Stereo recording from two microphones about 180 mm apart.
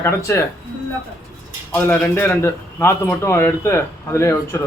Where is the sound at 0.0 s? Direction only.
15° left (ahead or behind).